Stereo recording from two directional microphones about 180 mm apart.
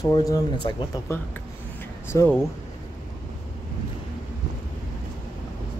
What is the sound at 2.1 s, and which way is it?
Speech, 15° left (ahead or behind).